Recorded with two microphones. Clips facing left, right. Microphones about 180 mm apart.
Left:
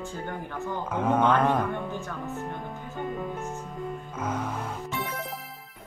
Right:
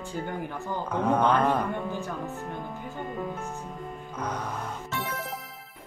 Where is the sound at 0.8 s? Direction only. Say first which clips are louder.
Even; 5° left (ahead or behind).